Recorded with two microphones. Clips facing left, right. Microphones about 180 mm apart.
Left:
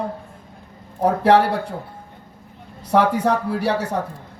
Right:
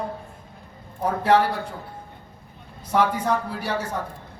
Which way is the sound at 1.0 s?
70° left (ahead or behind).